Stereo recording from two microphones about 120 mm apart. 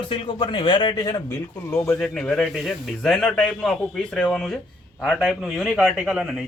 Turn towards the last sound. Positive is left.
turn(degrees=0)  # may be behind; listen again after turning